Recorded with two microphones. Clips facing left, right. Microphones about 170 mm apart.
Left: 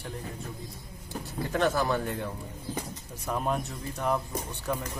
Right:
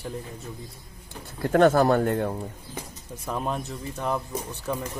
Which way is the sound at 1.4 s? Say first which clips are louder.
Right 8 dB; 50° right (ahead or behind).